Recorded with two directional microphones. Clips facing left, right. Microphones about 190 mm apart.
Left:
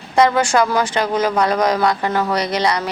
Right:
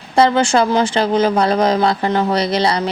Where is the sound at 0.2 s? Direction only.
30° right (ahead or behind).